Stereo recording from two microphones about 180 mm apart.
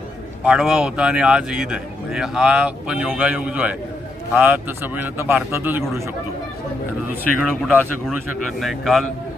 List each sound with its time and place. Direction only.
0.4 s speech: 5° right (ahead or behind)
7.3 s speech: centre (ahead or behind)